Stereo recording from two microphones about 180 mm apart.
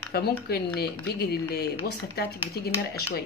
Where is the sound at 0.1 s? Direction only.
65° left (ahead or behind).